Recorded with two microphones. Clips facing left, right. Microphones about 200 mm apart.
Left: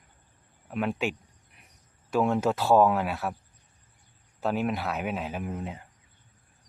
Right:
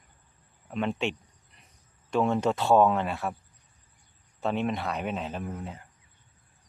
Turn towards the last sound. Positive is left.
turn(degrees=15)  # may be behind; listen again after turning